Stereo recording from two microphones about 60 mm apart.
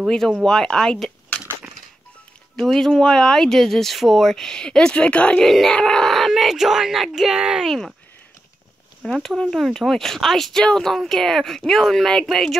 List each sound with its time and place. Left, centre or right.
0.5 s speech: centre
2.5 s speech: centre
5.4 s speech: centre
9.0 s speech: centre